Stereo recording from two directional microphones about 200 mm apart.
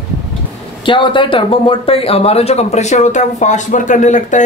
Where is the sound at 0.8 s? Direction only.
25° left (ahead or behind).